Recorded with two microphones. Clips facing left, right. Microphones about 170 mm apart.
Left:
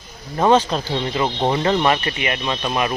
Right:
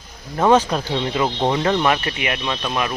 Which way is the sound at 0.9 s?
Centre (ahead or behind).